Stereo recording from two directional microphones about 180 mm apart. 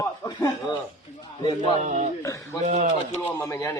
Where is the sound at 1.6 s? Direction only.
40° right (ahead or behind).